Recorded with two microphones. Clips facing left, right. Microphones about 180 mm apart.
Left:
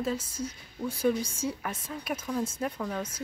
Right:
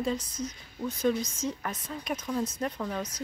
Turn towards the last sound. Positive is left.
turn(degrees=5)  # may be behind; listen again after turning